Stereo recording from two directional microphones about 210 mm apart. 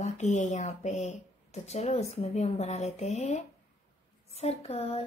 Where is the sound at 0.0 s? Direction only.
35° left (ahead or behind).